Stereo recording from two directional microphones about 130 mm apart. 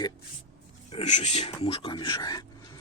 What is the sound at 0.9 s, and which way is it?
Speech, 55° left (ahead or behind).